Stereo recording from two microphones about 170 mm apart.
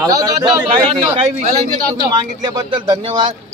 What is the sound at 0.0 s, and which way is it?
Speech, 25° right (ahead or behind).